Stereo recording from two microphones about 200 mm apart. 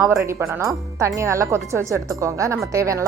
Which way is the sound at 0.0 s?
10° right (ahead or behind).